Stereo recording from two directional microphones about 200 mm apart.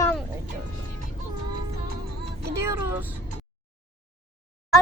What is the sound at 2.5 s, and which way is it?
Speech, 15° right (ahead or behind).